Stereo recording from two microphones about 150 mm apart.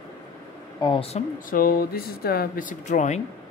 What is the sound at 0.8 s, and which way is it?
Speech, 35° left (ahead or behind).